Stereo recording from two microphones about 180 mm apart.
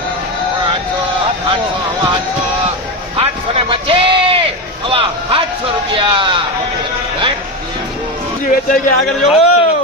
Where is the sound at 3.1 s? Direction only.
30° right (ahead or behind).